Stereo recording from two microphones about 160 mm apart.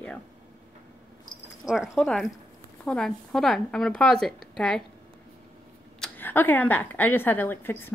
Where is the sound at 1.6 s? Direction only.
Centre (ahead or behind).